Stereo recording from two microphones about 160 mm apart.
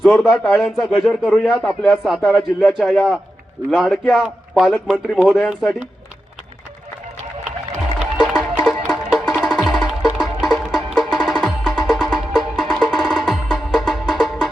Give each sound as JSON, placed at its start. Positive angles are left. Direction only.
{"t": 0.0, "sound": "a man's voice", "side_deg": 0}
{"t": 7.9, "sound": "music", "side_deg": -5}